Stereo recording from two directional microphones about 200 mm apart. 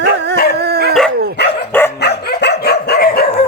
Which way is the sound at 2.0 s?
55° left (ahead or behind).